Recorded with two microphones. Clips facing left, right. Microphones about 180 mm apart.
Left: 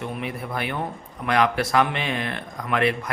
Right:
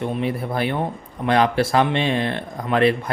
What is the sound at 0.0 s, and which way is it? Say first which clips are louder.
Speech: right 6 dB; 30° right (ahead or behind).